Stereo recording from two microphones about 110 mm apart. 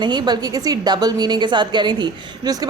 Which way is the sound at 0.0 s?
40° right (ahead or behind).